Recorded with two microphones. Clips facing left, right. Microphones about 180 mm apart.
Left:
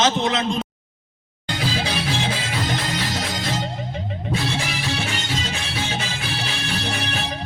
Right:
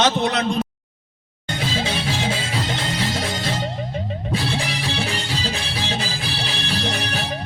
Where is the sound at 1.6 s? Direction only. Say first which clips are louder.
Even; 25° right (ahead or behind).